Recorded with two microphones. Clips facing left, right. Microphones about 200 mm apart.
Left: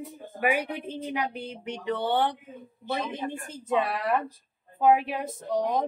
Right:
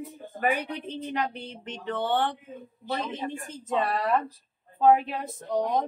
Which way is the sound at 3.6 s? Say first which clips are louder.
Even; 10° left (ahead or behind).